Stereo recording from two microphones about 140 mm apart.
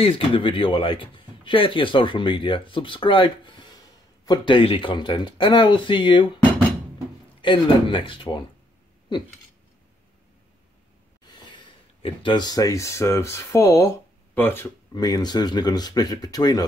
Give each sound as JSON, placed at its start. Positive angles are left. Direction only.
{"t": 0.0, "sound": "speech", "side_deg": 40}
{"t": 7.4, "sound": "speech", "side_deg": 35}
{"t": 11.2, "sound": "speech", "side_deg": 35}
{"t": 15.0, "sound": "speech", "side_deg": 30}